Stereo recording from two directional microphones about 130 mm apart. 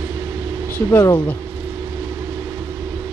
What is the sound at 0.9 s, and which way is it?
Speech, 25° left (ahead or behind).